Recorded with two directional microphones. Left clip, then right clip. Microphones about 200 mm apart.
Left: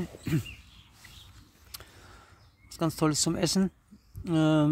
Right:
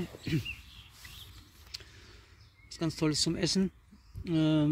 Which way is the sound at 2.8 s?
15° left (ahead or behind).